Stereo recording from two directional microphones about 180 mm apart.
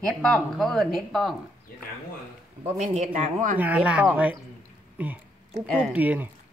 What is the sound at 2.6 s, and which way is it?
Speech, 40° right (ahead or behind).